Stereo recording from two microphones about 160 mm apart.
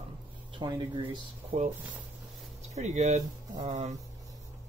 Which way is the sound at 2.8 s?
45° right (ahead or behind).